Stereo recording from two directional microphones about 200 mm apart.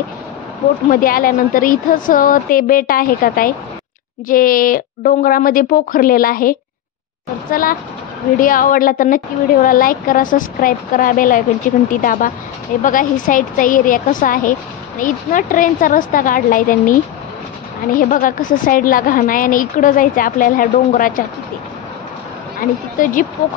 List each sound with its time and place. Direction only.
0.8 s a woman's voice: 45° left (ahead or behind)
22.6 s a woman's voice: 40° left (ahead or behind)